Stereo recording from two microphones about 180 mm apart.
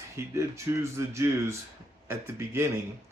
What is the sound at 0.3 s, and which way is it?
Speech, 15° right (ahead or behind).